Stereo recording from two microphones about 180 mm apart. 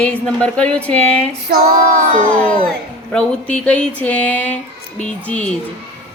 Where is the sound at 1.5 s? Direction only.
55° right (ahead or behind).